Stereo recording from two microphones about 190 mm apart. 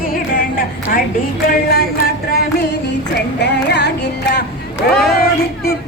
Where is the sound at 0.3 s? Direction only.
50° left (ahead or behind).